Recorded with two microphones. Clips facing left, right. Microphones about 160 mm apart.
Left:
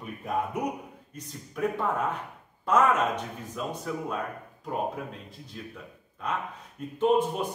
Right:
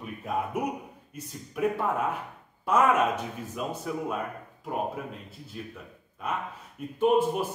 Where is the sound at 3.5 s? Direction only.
10° right (ahead or behind).